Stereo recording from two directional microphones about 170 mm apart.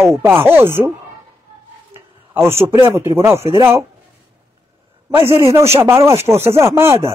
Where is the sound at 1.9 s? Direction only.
15° right (ahead or behind).